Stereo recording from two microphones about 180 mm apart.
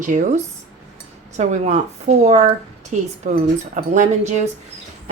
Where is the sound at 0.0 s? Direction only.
45° right (ahead or behind).